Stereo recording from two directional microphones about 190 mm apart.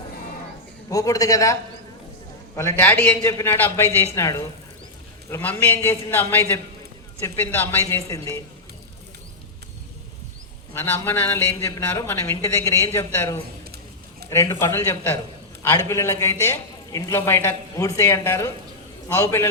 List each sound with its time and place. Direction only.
0.9 s a man's voice: 20° left (ahead or behind)
2.6 s a man's voice: 10° left (ahead or behind)
10.8 s a man's voice: 10° left (ahead or behind)